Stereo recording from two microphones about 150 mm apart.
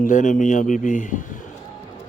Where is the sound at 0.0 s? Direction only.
55° left (ahead or behind).